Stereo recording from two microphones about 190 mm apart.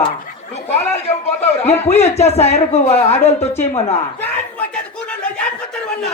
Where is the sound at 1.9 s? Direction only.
35° left (ahead or behind).